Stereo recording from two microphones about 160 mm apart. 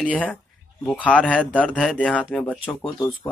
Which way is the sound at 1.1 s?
10° left (ahead or behind).